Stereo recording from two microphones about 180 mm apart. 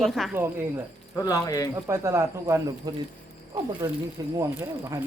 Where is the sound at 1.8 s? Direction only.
15° right (ahead or behind).